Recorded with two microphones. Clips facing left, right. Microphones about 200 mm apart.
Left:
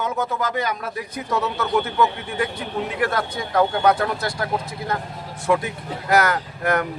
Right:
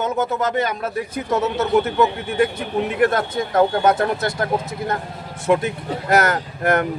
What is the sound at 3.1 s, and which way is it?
A man's voice, 25° right (ahead or behind).